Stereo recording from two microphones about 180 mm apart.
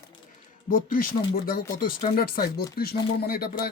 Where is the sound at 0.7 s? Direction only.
50° left (ahead or behind).